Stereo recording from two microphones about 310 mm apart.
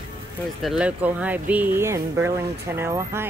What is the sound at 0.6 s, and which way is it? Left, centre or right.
Speech, centre.